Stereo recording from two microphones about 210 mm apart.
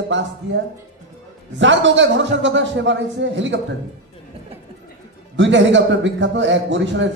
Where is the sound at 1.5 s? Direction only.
60° right (ahead or behind).